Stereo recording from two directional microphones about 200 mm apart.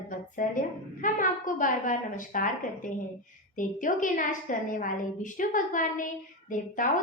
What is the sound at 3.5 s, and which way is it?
A woman's voice, 40° left (ahead or behind).